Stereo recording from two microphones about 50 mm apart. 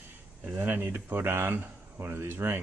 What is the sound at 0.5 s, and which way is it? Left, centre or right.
Speech, right.